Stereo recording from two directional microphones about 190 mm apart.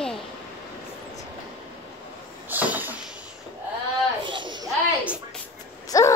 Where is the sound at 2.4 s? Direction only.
10° right (ahead or behind).